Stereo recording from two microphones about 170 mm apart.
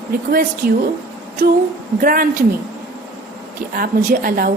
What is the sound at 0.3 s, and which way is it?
Speech, 60° right (ahead or behind).